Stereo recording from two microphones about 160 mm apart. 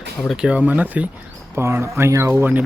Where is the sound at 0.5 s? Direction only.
10° right (ahead or behind).